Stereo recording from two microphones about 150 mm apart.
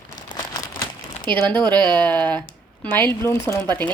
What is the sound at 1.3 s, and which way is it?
A woman's voice, 10° left (ahead or behind).